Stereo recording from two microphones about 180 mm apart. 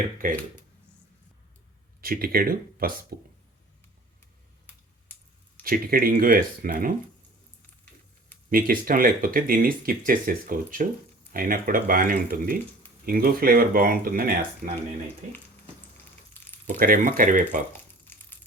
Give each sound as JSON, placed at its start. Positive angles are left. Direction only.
{"t": 0.2, "sound": "speech", "side_deg": -50}
{"t": 2.0, "sound": "speech", "side_deg": -55}
{"t": 5.6, "sound": "speech", "side_deg": -55}
{"t": 8.4, "sound": "speech", "side_deg": -50}
{"t": 16.4, "sound": "frying", "side_deg": 10}
{"t": 16.8, "sound": "speech", "side_deg": -50}